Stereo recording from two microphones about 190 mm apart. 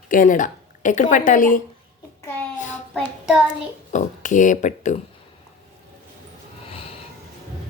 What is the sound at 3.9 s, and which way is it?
Speech, 40° left (ahead or behind).